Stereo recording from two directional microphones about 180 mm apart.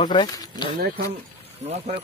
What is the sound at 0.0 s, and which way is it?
Speech, 25° left (ahead or behind).